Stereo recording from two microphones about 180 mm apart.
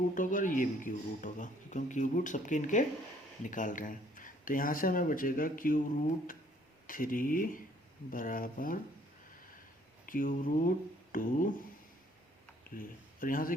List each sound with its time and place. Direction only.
0.1 s speech: 45° left (ahead or behind)
6.8 s speech: 50° left (ahead or behind)
10.1 s speech: 50° left (ahead or behind)
12.7 s speech: 50° left (ahead or behind)